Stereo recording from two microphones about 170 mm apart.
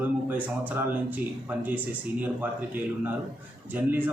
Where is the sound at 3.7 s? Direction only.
10° right (ahead or behind).